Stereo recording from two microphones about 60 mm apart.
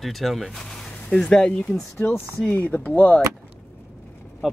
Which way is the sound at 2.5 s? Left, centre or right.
Left.